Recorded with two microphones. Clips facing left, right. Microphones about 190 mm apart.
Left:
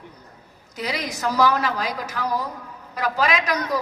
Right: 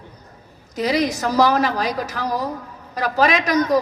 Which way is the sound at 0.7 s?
45° right (ahead or behind).